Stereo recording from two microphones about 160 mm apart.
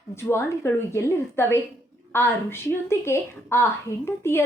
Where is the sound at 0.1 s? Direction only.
15° left (ahead or behind).